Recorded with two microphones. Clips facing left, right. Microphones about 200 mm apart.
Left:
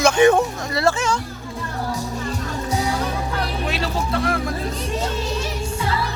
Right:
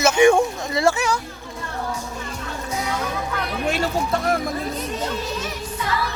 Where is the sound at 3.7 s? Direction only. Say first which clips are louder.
Right 2 dB; 50° right (ahead or behind).